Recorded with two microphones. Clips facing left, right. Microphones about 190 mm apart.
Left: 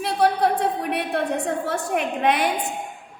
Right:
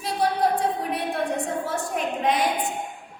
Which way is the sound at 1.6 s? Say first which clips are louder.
Left 3 dB; 65° left (ahead or behind).